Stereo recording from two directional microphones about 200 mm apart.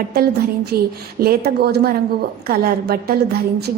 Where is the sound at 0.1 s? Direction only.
50° right (ahead or behind).